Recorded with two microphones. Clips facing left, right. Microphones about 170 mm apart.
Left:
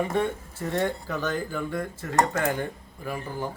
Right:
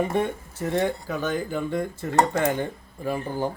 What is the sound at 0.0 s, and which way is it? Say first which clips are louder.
Dishes: right 2 dB; 20° right (ahead or behind).